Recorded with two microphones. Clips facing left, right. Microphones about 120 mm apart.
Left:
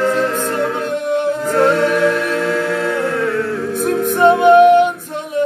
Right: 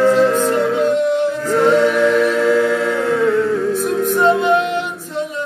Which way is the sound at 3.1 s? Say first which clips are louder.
Right 3 dB; 10° right (ahead or behind).